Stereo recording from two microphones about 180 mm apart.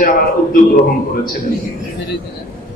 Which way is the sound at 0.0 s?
50° left (ahead or behind).